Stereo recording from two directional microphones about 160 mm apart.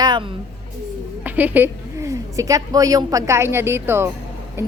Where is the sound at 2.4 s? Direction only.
20° right (ahead or behind).